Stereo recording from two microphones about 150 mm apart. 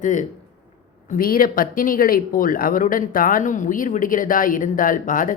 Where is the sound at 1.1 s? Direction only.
75° left (ahead or behind).